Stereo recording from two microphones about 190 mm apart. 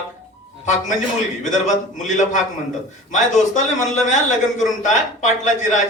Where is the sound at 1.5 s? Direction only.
40° left (ahead or behind).